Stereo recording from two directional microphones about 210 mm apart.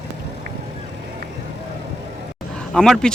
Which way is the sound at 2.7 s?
Centre (ahead or behind).